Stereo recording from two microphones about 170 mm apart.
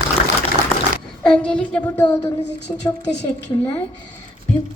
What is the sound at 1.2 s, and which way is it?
Speech, 5° left (ahead or behind).